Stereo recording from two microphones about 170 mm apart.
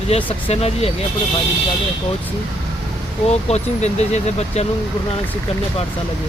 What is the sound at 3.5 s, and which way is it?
Speech, 40° left (ahead or behind).